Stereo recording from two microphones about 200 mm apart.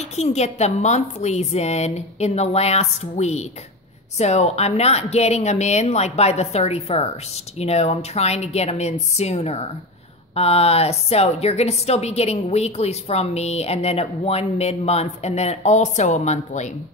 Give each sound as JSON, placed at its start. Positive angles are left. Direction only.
{"t": 0.1, "sound": "a woman's voice", "side_deg": 35}